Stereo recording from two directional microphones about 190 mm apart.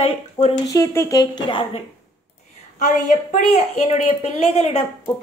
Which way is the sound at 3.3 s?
35° left (ahead or behind).